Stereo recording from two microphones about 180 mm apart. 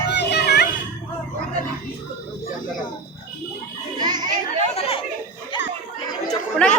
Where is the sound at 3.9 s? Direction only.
20° right (ahead or behind).